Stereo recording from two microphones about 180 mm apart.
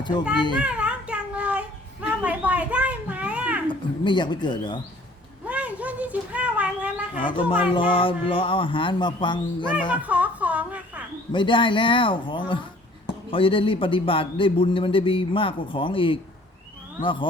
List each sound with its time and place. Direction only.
0.5 s child singing: 5° right (ahead or behind)
3.7 s speech: 25° left (ahead or behind)
5.5 s a sound: 10° right (ahead or behind)
7.2 s a man's voice: 30° left (ahead or behind)
9.9 s music: 10° right (ahead or behind)
11.3 s a man's voice: 25° left (ahead or behind)